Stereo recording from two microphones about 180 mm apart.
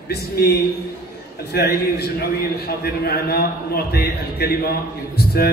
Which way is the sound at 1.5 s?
60° left (ahead or behind).